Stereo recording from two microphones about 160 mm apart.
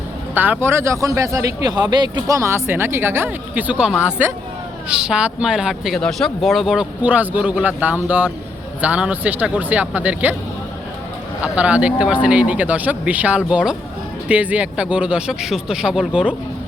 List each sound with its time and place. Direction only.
0.3 s a man's voice: 10° right (ahead or behind)
11.5 s a man's voice: 5° right (ahead or behind)